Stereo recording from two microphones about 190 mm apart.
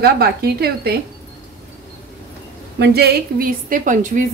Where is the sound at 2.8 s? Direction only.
55° right (ahead or behind).